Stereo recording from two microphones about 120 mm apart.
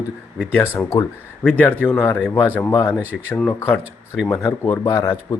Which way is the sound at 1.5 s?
15° left (ahead or behind).